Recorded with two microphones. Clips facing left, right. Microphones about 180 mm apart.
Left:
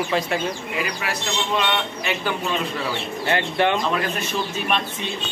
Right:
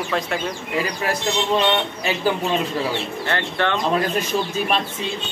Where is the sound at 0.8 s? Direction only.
35° right (ahead or behind).